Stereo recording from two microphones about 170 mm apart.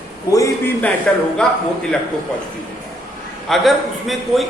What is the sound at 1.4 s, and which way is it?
Speech, 5° left (ahead or behind).